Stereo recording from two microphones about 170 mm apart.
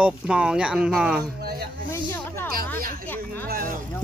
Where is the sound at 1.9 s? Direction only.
15° left (ahead or behind).